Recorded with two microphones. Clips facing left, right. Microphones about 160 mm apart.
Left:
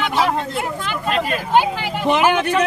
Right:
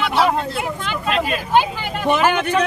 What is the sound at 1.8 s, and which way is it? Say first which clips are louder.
Speech: left 1 dB; 10° left (ahead or behind).